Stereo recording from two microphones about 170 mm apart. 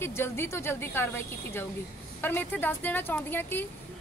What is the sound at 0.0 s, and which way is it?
A woman's voice, 15° left (ahead or behind).